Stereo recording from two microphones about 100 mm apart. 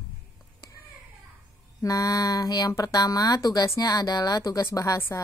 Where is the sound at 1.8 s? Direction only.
35° left (ahead or behind).